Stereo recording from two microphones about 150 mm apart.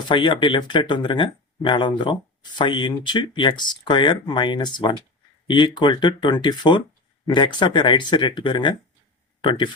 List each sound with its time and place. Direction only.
0.1 s speech: 35° left (ahead or behind)